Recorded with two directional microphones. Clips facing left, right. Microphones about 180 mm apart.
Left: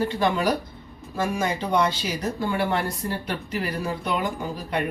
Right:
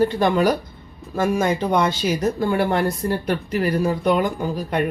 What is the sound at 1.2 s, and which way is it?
Speech, 50° right (ahead or behind).